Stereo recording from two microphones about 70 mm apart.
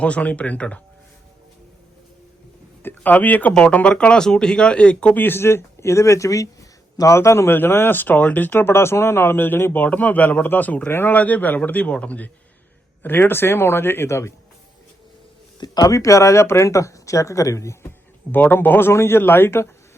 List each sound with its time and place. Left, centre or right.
0.0 s a man's voice: centre
2.8 s speech: left
5.1 s a man's voice: left
13.0 s speech: left
15.5 s speech: left
18.3 s speech: left